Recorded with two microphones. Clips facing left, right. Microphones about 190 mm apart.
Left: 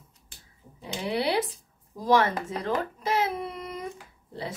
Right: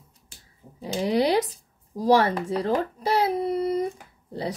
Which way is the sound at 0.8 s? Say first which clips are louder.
Right 6 dB; 35° right (ahead or behind).